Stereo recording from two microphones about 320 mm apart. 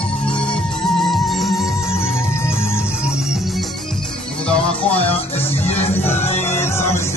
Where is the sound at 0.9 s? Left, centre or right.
Centre.